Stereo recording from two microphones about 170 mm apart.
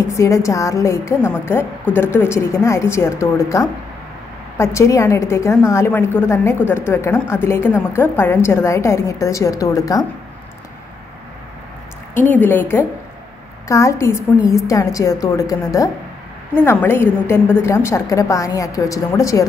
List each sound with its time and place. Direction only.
0.1 s a woman's voice: 20° left (ahead or behind)
12.2 s a woman's voice: 10° left (ahead or behind)